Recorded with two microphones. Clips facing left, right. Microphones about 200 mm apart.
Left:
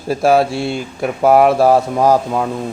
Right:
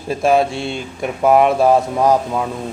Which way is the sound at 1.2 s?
35° left (ahead or behind).